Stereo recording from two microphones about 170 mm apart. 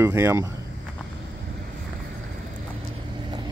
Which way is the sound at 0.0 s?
15° right (ahead or behind).